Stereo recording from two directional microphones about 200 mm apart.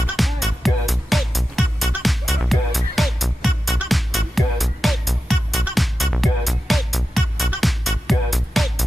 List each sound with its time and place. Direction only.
0.0 s music: centre (ahead or behind)